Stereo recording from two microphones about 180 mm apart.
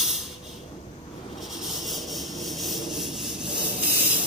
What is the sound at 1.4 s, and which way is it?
Vehicle, centre (ahead or behind).